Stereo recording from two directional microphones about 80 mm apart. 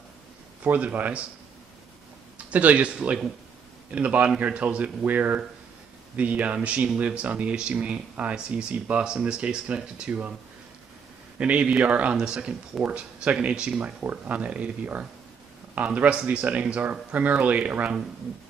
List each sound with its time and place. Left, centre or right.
0.7 s speech: centre
2.3 s speech: centre
11.3 s speech: centre